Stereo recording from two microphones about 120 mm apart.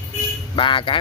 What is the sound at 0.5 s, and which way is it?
Speech, 45° left (ahead or behind).